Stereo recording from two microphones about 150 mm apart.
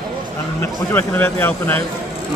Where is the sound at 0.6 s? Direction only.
15° left (ahead or behind).